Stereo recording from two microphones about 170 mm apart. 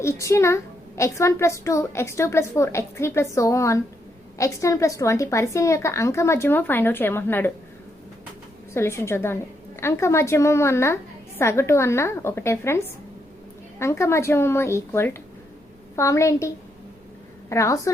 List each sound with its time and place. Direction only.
0.0 s a woman's voice: 15° left (ahead or behind)
8.7 s a woman's voice: 15° left (ahead or behind)
17.5 s a woman's voice: 20° left (ahead or behind)